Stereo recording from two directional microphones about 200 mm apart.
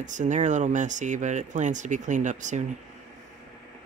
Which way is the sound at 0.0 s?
40° right (ahead or behind).